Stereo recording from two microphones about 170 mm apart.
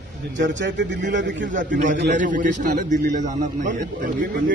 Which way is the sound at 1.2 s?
90° right.